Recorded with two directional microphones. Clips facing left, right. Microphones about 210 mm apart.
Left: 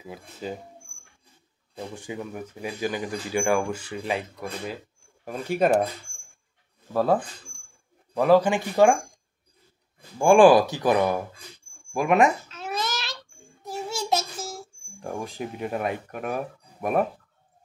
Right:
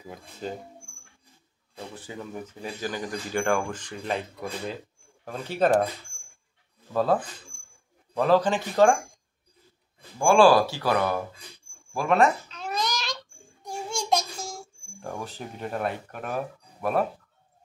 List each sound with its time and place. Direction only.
0.0 s speech: 5° left (ahead or behind)
2.0 s speech: 15° left (ahead or behind)
6.9 s speech: 10° left (ahead or behind)
10.1 s speech: 20° left (ahead or behind)
12.4 s babbling: 5° left (ahead or behind)
15.0 s speech: 15° left (ahead or behind)